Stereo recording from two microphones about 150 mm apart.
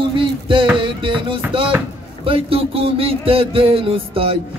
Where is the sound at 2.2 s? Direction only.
40° right (ahead or behind).